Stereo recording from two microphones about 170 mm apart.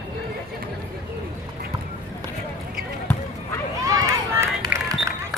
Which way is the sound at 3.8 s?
20° right (ahead or behind).